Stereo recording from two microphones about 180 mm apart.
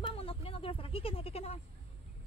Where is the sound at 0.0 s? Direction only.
30° left (ahead or behind).